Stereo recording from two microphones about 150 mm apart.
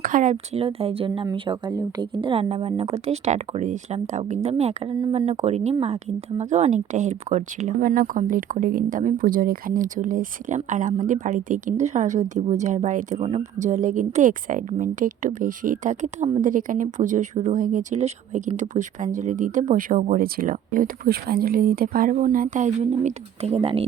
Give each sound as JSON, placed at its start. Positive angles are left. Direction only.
{"t": 0.0, "sound": "speech", "side_deg": -60}
{"t": 7.8, "sound": "speech", "side_deg": -70}
{"t": 22.1, "sound": "speech", "side_deg": -60}